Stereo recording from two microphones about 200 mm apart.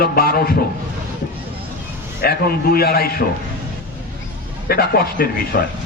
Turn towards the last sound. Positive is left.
turn(degrees=50)  # may be behind; listen again after turning